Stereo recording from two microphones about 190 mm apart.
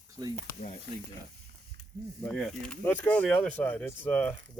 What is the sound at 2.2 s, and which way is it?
Speech, 5° left (ahead or behind).